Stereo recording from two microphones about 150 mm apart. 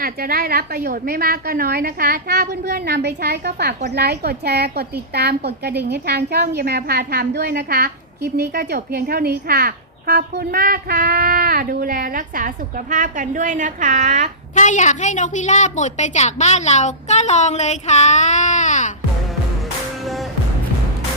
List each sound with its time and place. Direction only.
0.0 s a woman's voice: 75° right (ahead or behind); by 14.3 s 55° right (ahead or behind)
14.5 s a woman's voice: 55° left (ahead or behind)